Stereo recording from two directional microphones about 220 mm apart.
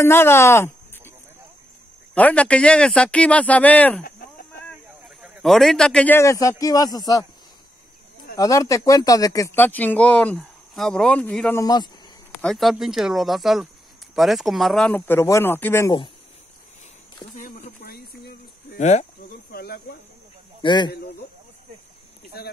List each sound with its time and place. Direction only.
0.0 s speech: 10° left (ahead or behind)
2.1 s a man's voice: 5° left (ahead or behind)
4.0 s chicken: 40° left (ahead or behind)
5.2 s speech: centre (ahead or behind); by 7.2 s 15° left (ahead or behind)
8.4 s speech: 15° left (ahead or behind)
11.6 s speech: 20° left (ahead or behind)
12.4 s a man's voice: centre (ahead or behind)
17.4 s a sound: 35° left (ahead or behind)
19.5 s speech: 45° left (ahead or behind)
20.6 s speech: 20° left (ahead or behind)
22.3 s speech: 45° left (ahead or behind)